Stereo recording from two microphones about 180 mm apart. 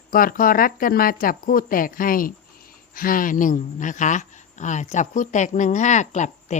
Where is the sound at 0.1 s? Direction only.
55° left (ahead or behind).